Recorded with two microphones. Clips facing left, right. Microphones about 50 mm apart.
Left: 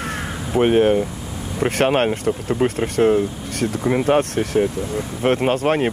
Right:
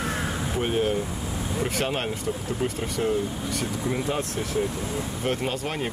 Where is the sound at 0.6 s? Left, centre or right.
Left.